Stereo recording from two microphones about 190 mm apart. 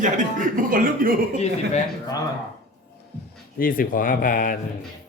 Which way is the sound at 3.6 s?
50° left (ahead or behind).